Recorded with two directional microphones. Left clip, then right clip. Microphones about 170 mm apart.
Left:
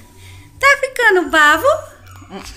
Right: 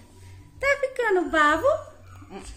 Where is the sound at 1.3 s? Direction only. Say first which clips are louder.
Left 9 dB; 10° right (ahead or behind).